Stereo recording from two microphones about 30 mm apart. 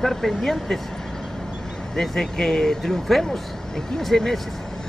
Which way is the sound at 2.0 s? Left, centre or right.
Centre.